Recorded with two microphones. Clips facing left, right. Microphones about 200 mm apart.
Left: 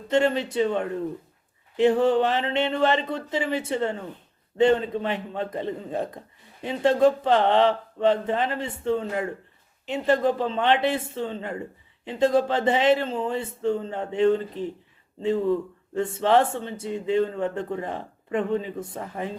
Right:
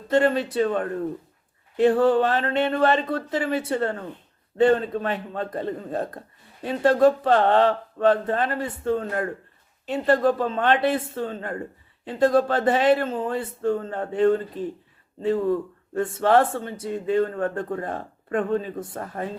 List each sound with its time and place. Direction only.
0.1 s speech: 20° left (ahead or behind)